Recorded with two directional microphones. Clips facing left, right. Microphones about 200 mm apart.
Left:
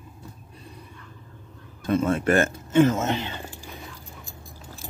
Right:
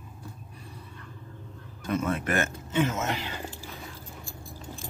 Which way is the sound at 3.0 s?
25° left (ahead or behind).